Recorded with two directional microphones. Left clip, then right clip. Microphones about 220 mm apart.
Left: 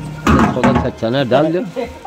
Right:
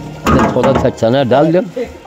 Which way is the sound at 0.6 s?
30° right (ahead or behind).